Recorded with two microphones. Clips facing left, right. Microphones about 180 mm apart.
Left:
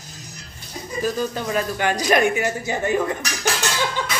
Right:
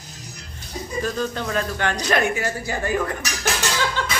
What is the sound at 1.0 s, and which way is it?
A woman's voice, 10° left (ahead or behind).